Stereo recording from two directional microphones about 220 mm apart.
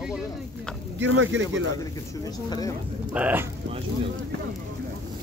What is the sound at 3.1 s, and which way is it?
Speech, 5° right (ahead or behind).